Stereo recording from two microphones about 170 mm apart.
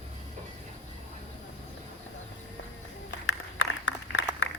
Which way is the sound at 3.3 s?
90° left.